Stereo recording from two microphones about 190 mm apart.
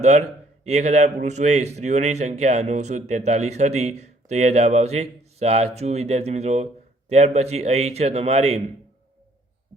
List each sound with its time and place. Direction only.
0.0 s a man's voice: 35° right (ahead or behind)